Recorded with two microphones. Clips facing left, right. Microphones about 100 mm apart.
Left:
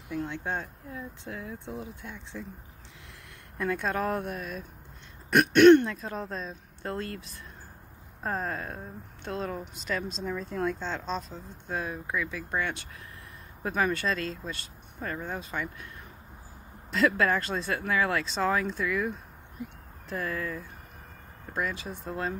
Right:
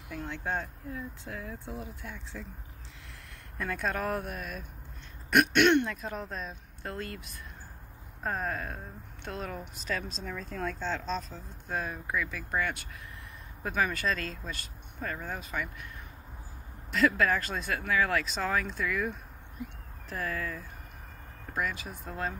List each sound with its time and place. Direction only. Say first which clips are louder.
0.1 s speech: left 2 dB; 20° left (ahead or behind)
3.5 s speech: left 3 dB; 25° left (ahead or behind)
11.1 s speech: left 1 dB; 30° left (ahead or behind)
11.8 s speech: left 2 dB; 20° left (ahead or behind)
16.9 s speech: left 1 dB; 30° left (ahead or behind)
20.1 s speech: left 2 dB; 25° left (ahead or behind)